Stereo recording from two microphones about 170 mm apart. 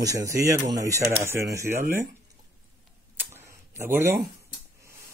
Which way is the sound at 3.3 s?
15° right (ahead or behind).